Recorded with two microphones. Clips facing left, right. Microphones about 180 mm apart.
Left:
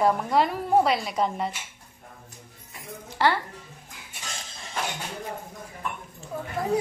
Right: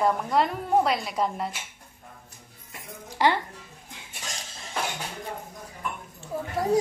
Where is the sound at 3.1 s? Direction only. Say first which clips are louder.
Even; 15° right (ahead or behind).